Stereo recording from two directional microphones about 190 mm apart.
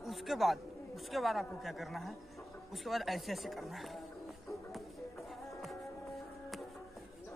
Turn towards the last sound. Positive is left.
turn(degrees=0)  # may be behind; listen again after turning